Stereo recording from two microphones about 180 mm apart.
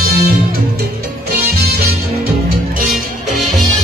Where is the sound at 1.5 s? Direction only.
60° right (ahead or behind).